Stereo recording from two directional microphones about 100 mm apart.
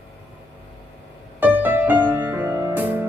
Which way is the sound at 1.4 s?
15° right (ahead or behind).